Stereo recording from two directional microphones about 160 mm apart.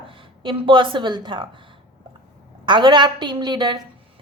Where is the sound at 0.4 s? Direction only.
30° right (ahead or behind).